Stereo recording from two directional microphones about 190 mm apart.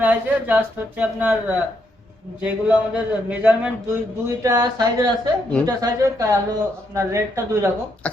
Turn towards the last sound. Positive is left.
turn(degrees=-15)  # may be behind; listen again after turning